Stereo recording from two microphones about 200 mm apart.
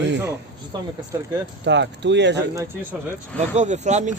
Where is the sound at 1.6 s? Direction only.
60° right (ahead or behind).